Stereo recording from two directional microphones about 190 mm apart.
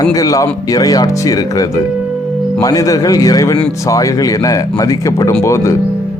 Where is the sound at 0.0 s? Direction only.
20° left (ahead or behind).